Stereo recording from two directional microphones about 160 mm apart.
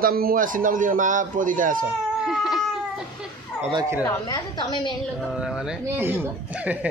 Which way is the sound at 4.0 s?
20° left (ahead or behind).